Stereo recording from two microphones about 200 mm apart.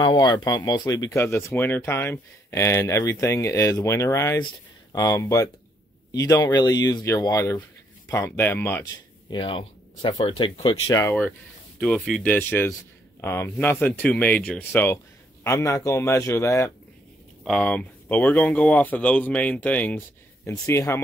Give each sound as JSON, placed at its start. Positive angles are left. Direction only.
{"t": 0.0, "sound": "speech", "side_deg": 20}
{"t": 10.9, "sound": "speech", "side_deg": 15}